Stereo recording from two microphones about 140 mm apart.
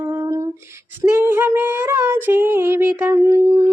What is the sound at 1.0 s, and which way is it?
Child singing, 15° right (ahead or behind).